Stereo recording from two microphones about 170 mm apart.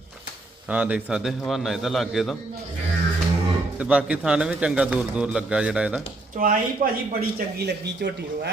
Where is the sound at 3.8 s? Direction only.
5° right (ahead or behind).